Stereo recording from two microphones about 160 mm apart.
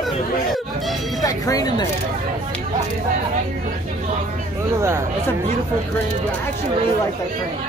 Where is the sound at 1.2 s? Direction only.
20° left (ahead or behind).